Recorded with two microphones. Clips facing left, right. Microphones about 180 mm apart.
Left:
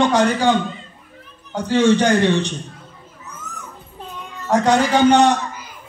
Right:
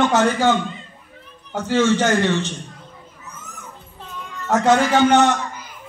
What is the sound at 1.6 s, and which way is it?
Speech, 15° left (ahead or behind).